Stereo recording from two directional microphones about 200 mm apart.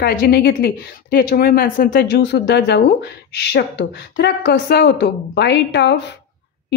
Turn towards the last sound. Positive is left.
turn(degrees=60)  # may be behind; listen again after turning